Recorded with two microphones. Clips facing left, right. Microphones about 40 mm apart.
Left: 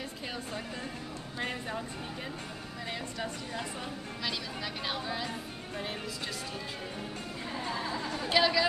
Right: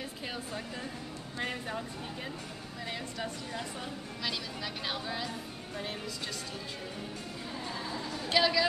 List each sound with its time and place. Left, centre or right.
1.4 s speech: centre
7.5 s music: left
8.3 s speech: centre